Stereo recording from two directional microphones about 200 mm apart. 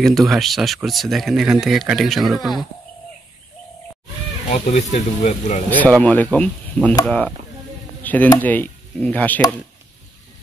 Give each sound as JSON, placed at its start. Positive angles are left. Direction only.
{"t": 0.0, "sound": "speech", "side_deg": 0}
{"t": 4.5, "sound": "speech", "side_deg": 40}
{"t": 5.7, "sound": "speech", "side_deg": 5}